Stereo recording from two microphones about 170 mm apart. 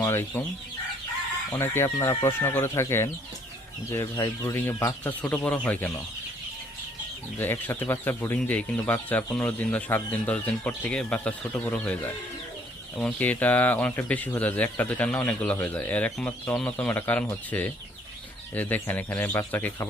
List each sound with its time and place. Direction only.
0.0 s chicken: 15° left (ahead or behind)
1.5 s speech: 15° left (ahead or behind)
7.3 s speech: 15° left (ahead or behind)